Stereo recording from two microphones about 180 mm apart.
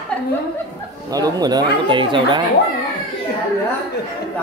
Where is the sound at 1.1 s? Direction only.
20° right (ahead or behind).